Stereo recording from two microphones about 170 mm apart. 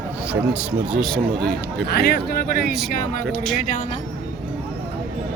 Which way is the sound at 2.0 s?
70° left (ahead or behind).